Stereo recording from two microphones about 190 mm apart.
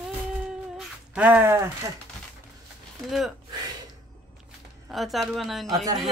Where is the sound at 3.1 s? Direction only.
Centre (ahead or behind).